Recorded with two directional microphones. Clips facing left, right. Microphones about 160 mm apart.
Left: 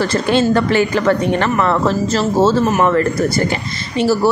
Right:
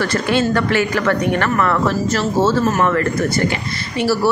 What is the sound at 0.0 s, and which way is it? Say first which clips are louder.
Speech: left 3 dB; 30° left (ahead or behind).